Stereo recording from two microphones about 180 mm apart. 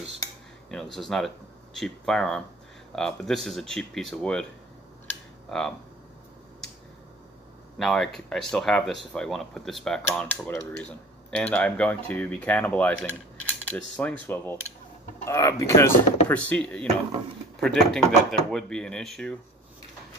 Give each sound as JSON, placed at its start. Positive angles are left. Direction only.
{"t": 0.9, "sound": "speech", "side_deg": 0}
{"t": 5.5, "sound": "speech", "side_deg": 5}
{"t": 7.8, "sound": "speech", "side_deg": 0}